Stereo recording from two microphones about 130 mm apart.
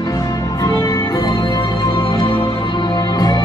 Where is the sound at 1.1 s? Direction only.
35° left (ahead or behind).